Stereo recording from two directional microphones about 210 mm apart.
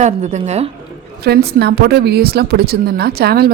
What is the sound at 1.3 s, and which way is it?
A woman's voice, 50° right (ahead or behind).